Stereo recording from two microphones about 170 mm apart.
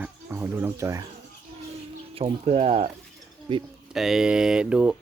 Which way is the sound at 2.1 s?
35° right (ahead or behind).